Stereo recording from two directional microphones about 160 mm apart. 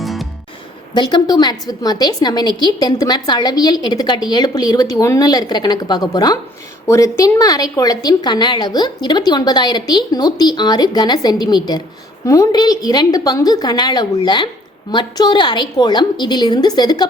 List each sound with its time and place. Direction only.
0.0 s music: centre (ahead or behind)
0.9 s a woman's voice: 25° left (ahead or behind)